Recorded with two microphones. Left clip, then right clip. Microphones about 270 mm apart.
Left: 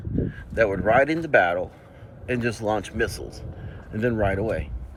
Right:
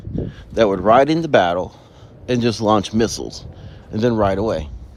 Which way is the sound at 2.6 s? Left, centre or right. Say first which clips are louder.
Right 9 dB; right.